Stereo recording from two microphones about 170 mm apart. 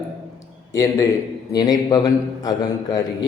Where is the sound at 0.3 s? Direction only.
20° left (ahead or behind).